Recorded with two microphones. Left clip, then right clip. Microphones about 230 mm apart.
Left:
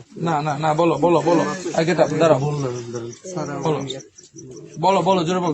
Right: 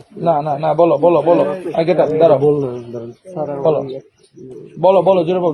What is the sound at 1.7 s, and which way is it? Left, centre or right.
Speech, left.